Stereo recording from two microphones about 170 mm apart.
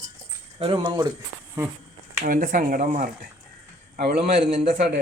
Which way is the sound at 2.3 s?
55° right (ahead or behind).